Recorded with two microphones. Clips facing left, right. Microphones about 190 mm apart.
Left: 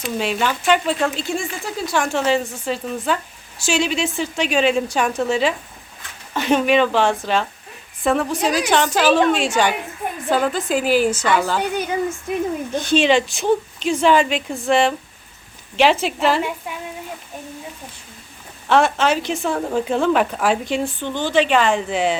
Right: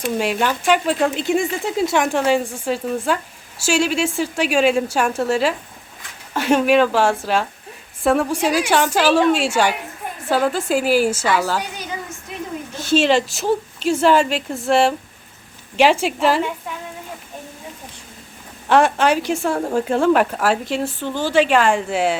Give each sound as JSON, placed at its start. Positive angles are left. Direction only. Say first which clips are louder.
{"t": 0.2, "sound": "speech", "louder": "right 1 dB", "side_deg": -10}
{"t": 11.6, "sound": "a woman's voice", "louder": "left 9 dB", "side_deg": 60}
{"t": 12.9, "sound": "a woman's voice", "louder": "right 1 dB", "side_deg": -5}
{"t": 18.7, "sound": "speech", "louder": "right 1 dB", "side_deg": -10}